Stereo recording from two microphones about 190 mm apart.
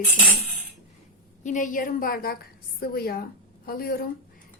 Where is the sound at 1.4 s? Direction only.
40° left (ahead or behind).